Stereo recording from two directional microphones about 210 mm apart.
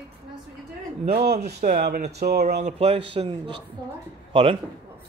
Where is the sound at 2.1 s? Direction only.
50° right (ahead or behind).